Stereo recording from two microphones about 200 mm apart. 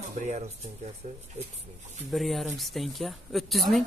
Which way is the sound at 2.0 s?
Centre (ahead or behind).